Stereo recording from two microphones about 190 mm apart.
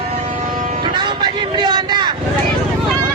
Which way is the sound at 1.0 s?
25° right (ahead or behind).